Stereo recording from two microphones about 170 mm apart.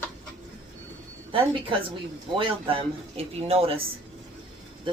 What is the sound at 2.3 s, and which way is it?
A man's voice, 30° right (ahead or behind).